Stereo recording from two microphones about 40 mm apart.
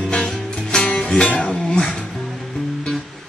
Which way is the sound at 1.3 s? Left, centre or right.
Left.